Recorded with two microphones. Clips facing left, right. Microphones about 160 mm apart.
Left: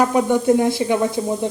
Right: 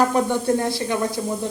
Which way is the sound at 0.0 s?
10° left (ahead or behind).